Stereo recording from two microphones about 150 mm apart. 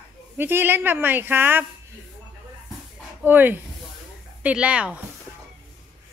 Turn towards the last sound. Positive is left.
turn(degrees=-10)  # may be behind; listen again after turning